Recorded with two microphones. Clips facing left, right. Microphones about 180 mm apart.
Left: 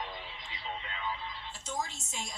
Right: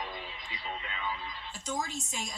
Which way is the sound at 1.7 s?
15° right (ahead or behind).